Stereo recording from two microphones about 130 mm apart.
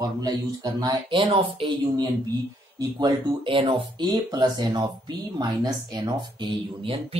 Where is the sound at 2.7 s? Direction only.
35° right (ahead or behind).